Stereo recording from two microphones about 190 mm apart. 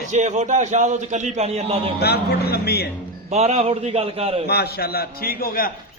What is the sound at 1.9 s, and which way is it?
Speech, 55° left (ahead or behind).